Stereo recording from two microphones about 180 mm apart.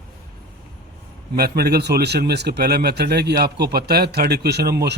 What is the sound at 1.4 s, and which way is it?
Speech, 60° right (ahead or behind).